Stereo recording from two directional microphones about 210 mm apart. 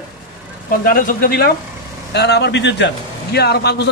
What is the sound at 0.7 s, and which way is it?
A man's voice, 40° left (ahead or behind).